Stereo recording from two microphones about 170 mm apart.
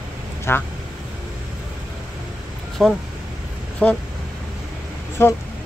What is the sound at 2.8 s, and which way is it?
Speech, centre (ahead or behind).